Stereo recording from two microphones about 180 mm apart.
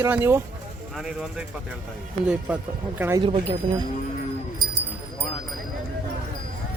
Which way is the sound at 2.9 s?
10° right (ahead or behind).